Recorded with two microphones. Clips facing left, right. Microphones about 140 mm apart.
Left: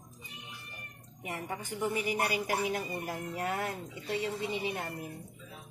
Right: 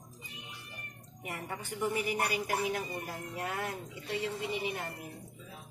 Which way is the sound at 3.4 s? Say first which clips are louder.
Left 2 dB; 25° left (ahead or behind).